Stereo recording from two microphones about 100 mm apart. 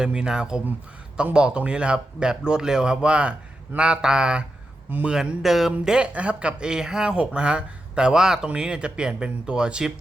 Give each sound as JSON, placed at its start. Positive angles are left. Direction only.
{"t": 0.0, "sound": "speech", "side_deg": -10}
{"t": 5.1, "sound": "speech", "side_deg": -5}